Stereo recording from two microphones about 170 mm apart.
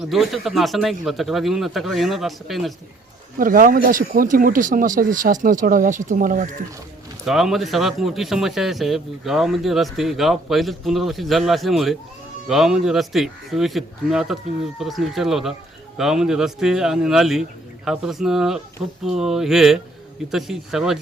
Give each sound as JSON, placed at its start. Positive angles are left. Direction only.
{"t": 0.0, "sound": "a man's voice", "side_deg": 0}
{"t": 3.3, "sound": "speech", "side_deg": -55}
{"t": 7.3, "sound": "a man's voice", "side_deg": 0}